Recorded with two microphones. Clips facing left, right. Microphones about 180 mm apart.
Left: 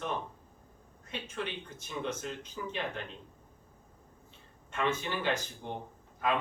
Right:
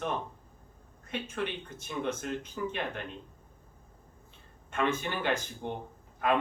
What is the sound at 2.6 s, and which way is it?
Speech, 55° right (ahead or behind).